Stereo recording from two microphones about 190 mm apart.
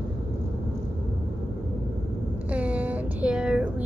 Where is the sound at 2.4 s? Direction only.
5° right (ahead or behind).